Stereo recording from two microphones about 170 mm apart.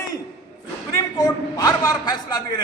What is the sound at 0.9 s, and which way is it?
A man's voice, 20° left (ahead or behind).